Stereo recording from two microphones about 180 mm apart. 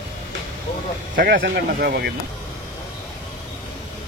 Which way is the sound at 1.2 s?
55° right (ahead or behind).